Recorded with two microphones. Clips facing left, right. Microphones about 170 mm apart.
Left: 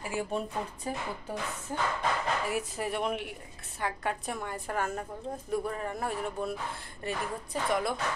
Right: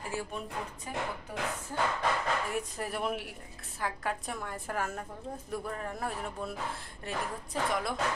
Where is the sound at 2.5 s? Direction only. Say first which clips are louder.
Left 3 dB; 5° left (ahead or behind).